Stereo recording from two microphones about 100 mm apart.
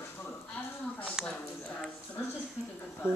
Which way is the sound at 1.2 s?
5° right (ahead or behind).